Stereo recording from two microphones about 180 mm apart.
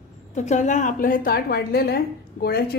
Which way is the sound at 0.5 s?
45° left (ahead or behind).